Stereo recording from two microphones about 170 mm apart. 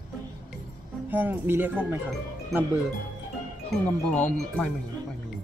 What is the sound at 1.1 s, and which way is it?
Speech, 10° right (ahead or behind).